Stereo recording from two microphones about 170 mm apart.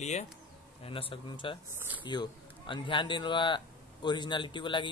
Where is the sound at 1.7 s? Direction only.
10° right (ahead or behind).